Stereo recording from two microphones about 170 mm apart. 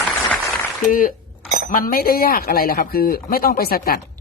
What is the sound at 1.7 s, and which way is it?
Speech, 55° left (ahead or behind).